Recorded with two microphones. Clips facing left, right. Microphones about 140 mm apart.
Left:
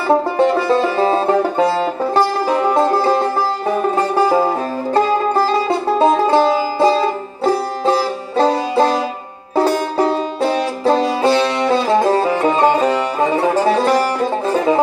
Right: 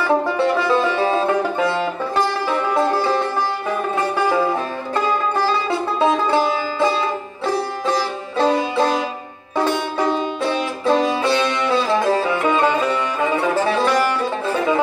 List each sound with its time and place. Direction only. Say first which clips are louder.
0.4 s music: left 3 dB; 40° left (ahead or behind)